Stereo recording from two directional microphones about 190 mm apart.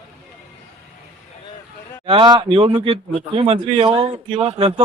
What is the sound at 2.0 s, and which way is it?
A man's voice, 25° right (ahead or behind).